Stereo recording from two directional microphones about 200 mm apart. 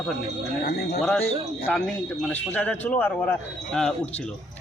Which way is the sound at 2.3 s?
10° left (ahead or behind).